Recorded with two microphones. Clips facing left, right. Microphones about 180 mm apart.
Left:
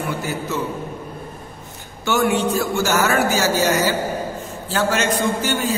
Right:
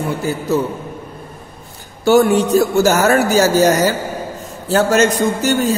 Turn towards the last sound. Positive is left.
turn(degrees=-45)  # may be behind; listen again after turning